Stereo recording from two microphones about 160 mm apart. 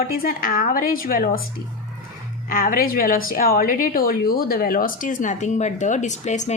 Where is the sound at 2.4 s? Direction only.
60° left (ahead or behind).